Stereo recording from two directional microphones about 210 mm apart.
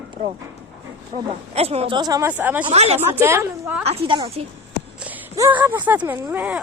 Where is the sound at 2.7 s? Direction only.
30° right (ahead or behind).